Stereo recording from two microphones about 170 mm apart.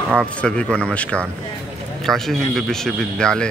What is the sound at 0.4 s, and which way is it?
A man's voice, 5° left (ahead or behind).